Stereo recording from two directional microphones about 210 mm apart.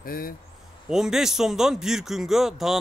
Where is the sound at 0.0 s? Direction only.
40° left (ahead or behind).